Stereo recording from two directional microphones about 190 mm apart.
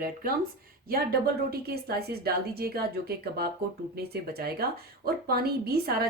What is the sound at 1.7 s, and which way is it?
A woman's voice, 55° right (ahead or behind).